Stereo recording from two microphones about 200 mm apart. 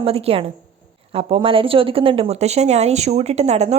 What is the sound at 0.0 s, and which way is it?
Speech, 30° right (ahead or behind).